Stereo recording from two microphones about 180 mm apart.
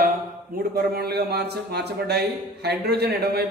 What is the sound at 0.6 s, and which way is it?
A man's voice, 60° right (ahead or behind).